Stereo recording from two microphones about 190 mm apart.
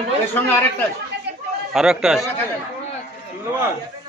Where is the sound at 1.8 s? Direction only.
5° right (ahead or behind).